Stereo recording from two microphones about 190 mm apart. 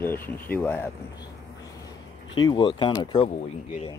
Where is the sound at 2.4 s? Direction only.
25° left (ahead or behind).